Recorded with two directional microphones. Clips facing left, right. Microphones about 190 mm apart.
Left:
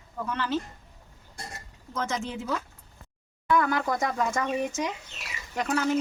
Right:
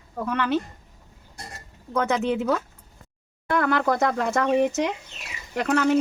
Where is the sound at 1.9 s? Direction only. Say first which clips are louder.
Right 8 dB; 60° right (ahead or behind).